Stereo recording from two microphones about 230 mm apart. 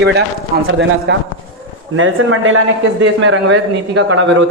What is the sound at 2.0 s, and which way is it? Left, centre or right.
A man's voice, right.